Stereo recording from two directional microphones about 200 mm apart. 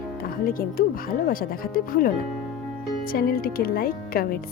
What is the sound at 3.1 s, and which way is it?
Speech, 45° left (ahead or behind).